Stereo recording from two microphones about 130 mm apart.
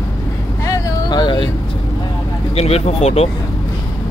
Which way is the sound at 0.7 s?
30° left (ahead or behind).